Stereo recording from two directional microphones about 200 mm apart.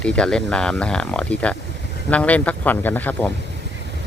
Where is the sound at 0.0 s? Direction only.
5° left (ahead or behind).